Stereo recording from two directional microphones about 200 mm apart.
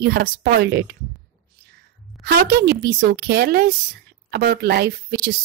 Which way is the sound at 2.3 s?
55° right (ahead or behind).